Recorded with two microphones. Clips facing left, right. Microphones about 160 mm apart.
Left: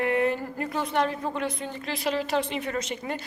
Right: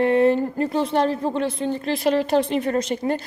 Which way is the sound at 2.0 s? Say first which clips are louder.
Right 6 dB; 45° right (ahead or behind).